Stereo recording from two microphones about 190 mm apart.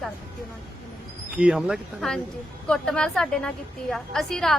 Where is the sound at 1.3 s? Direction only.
5° right (ahead or behind).